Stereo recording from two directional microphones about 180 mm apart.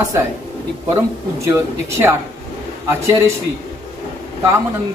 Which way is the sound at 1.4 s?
15° right (ahead or behind).